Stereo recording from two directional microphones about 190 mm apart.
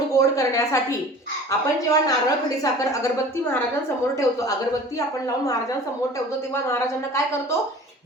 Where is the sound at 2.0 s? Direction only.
20° left (ahead or behind).